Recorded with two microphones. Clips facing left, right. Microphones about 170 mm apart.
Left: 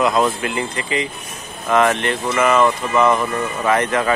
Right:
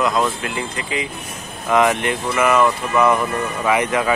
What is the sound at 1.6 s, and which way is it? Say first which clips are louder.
Speech: even; 15° right (ahead or behind).